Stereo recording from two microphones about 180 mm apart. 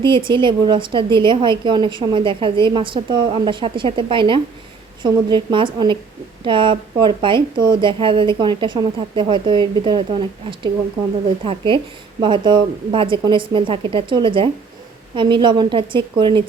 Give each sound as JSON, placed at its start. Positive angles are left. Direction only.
{"t": 0.0, "sound": "a woman's voice", "side_deg": -25}